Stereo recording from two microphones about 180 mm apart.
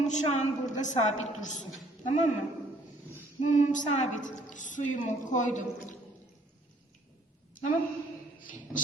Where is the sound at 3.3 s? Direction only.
45° left (ahead or behind).